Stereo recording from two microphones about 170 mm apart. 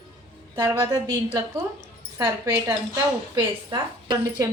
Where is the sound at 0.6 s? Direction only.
15° right (ahead or behind).